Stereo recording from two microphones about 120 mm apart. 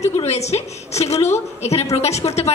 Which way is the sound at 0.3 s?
65° left (ahead or behind).